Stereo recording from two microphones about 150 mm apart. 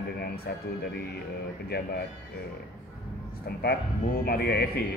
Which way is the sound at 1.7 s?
90° left.